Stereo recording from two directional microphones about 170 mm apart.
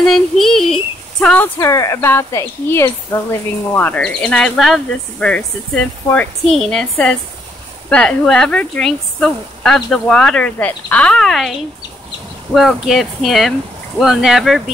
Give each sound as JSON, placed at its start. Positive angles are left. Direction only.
{"t": 0.0, "sound": "speech", "side_deg": 0}
{"t": 1.6, "sound": "speech", "side_deg": 20}
{"t": 12.5, "sound": "speech", "side_deg": 0}